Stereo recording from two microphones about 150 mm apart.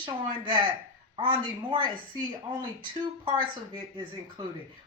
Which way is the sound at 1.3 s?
30° right (ahead or behind).